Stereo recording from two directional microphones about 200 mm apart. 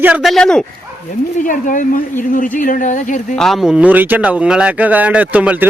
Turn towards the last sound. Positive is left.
turn(degrees=-5)  # may be behind; listen again after turning